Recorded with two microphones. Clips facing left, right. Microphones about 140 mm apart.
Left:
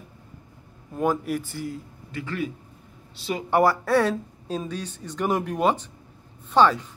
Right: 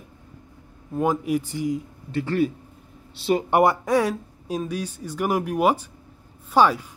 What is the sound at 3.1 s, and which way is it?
Speech, 65° right (ahead or behind).